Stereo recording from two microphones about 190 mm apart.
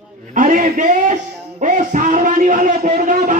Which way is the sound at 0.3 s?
40° right (ahead or behind).